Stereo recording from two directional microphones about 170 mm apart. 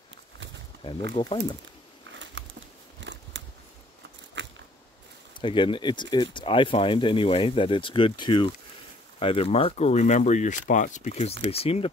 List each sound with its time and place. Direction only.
1.1 s speech: 30° left (ahead or behind)
3.0 s a sound: 90° right
5.4 s speech: 30° left (ahead or behind)